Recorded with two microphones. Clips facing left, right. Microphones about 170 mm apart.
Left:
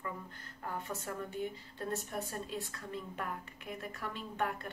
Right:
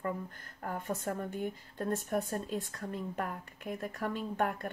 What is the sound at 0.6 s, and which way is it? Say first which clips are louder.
Speech: right 5 dB; 50° right (ahead or behind).